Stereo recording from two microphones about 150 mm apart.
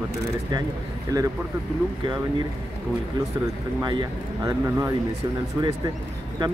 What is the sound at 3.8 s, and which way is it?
Speech, 25° right (ahead or behind).